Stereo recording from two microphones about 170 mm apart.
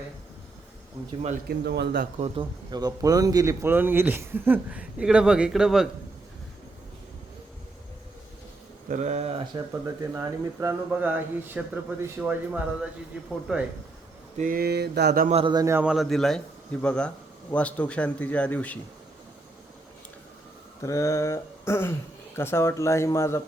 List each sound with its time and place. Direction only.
1.5 s a man's voice: 80° right
2.1 s speech: 35° right (ahead or behind); by 5.9 s centre (ahead or behind)
8.9 s speech: 45° right (ahead or behind)
9.8 s speech: 20° right (ahead or behind)
14.3 s mantra: 55° right (ahead or behind)
15.3 s a man's voice: 35° right (ahead or behind)
15.5 s speech: 15° right (ahead or behind)
15.8 s a man's voice: 5° right (ahead or behind)
20.8 s a man's voice: 20° left (ahead or behind)